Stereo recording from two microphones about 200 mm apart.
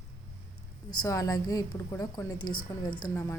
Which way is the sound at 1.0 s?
15° left (ahead or behind).